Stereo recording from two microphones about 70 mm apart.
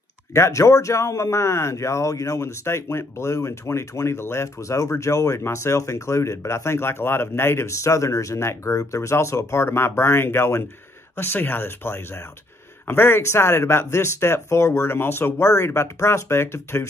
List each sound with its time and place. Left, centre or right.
0.3 s speech: left